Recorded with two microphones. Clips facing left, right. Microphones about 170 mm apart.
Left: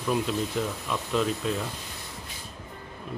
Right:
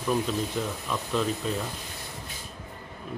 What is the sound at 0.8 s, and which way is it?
Speech, centre (ahead or behind).